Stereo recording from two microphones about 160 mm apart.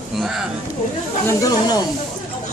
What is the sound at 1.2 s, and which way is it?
Speech, 25° left (ahead or behind).